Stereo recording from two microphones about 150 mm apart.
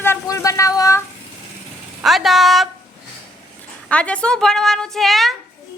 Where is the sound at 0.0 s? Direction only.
15° left (ahead or behind).